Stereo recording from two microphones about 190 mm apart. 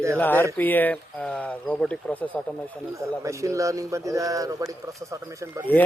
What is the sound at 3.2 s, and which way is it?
Speech, 15° right (ahead or behind).